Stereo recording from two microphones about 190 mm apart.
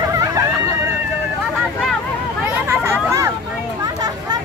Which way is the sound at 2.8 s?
15° right (ahead or behind).